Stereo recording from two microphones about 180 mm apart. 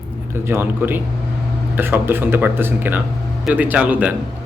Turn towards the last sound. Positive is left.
turn(degrees=-10)  # may be behind; listen again after turning